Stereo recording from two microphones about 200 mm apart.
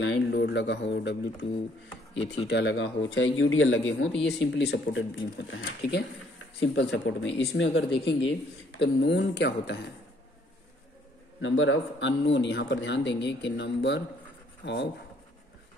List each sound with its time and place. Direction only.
0.0 s speech: 65° left (ahead or behind)
4.3 s speech: 60° left (ahead or behind)
11.4 s speech: 70° left (ahead or behind)